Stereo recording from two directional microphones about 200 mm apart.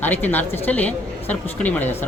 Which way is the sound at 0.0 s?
10° left (ahead or behind).